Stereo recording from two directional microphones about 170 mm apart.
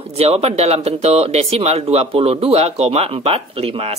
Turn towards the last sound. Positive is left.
turn(degrees=-35)  # may be behind; listen again after turning